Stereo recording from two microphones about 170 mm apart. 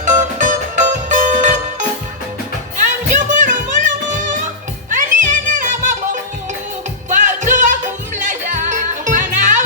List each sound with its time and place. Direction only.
0.0 s music: 50° right (ahead or behind)
2.8 s music: 45° right (ahead or behind)